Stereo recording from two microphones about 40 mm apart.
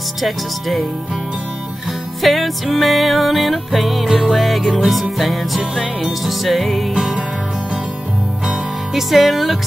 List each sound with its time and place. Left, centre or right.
0.2 s music: centre
2.2 s music: centre
6.9 s music: centre
8.5 s music: centre